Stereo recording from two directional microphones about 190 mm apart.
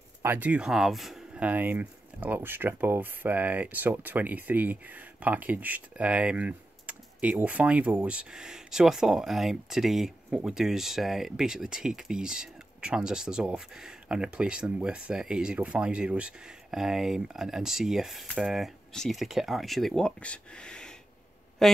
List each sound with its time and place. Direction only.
0.2 s speech: 10° right (ahead or behind)